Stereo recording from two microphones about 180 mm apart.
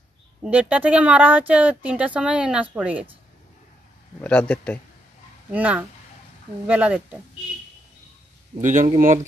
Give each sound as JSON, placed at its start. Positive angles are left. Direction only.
{"t": 0.4, "sound": "speech", "side_deg": -10}
{"t": 4.2, "sound": "speech", "side_deg": 5}
{"t": 5.5, "sound": "speech", "side_deg": -10}
{"t": 8.5, "sound": "speech", "side_deg": -45}